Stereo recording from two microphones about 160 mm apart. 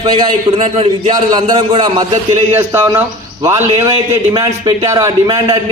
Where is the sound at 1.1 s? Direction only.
25° right (ahead or behind).